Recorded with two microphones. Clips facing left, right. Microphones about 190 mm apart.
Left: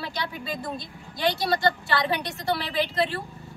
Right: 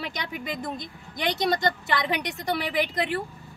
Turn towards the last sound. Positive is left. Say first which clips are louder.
# even
turn(degrees=-15)  # may be behind; listen again after turning